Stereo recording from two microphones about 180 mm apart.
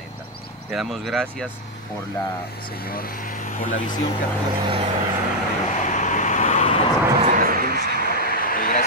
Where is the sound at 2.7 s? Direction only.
55° left (ahead or behind).